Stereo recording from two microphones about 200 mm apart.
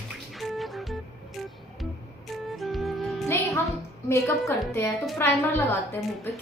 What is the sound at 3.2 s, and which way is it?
Music, 15° left (ahead or behind).